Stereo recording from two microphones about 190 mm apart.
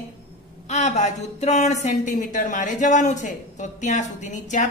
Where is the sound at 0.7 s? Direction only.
40° left (ahead or behind).